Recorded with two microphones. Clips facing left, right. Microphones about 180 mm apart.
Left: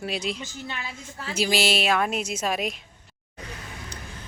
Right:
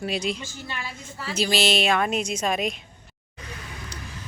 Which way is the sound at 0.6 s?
20° left (ahead or behind).